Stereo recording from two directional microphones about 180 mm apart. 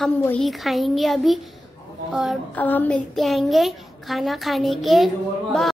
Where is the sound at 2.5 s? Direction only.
10° left (ahead or behind).